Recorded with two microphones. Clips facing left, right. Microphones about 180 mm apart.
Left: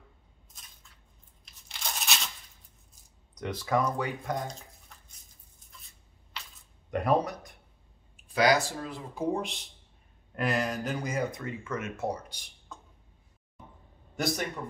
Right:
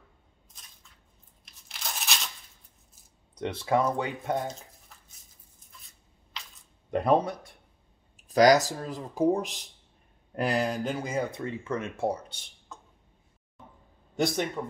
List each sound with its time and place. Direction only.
1.4 s crunch: centre (ahead or behind)
3.3 s speech: 25° right (ahead or behind)
4.5 s a sound: centre (ahead or behind)
6.9 s a sound: 25° right (ahead or behind)
8.3 s speech: 40° right (ahead or behind)
14.1 s speech: 25° right (ahead or behind)